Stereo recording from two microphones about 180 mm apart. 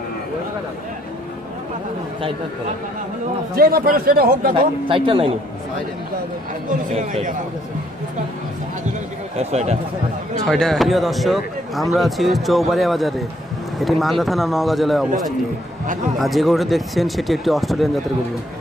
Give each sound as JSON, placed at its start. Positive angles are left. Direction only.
{"t": 3.5, "sound": "speech", "side_deg": -55}
{"t": 4.6, "sound": "a man's voice", "side_deg": -30}
{"t": 6.7, "sound": "speech", "side_deg": -45}
{"t": 9.4, "sound": "speech", "side_deg": -40}
{"t": 10.4, "sound": "speech", "side_deg": 0}